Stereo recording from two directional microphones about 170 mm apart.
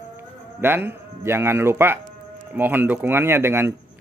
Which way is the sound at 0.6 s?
10° right (ahead or behind).